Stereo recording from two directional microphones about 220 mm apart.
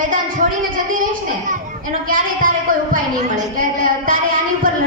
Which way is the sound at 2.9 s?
35° right (ahead or behind).